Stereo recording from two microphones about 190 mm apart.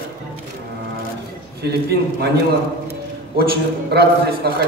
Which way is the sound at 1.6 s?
60° right (ahead or behind).